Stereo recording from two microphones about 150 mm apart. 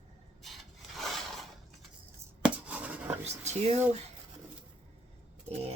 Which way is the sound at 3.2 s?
50° right (ahead or behind).